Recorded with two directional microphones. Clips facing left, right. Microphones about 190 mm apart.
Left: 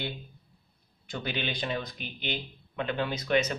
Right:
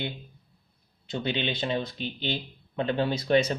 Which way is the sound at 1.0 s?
25° right (ahead or behind).